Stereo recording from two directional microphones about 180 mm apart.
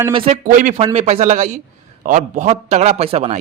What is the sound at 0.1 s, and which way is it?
Speech, 30° right (ahead or behind).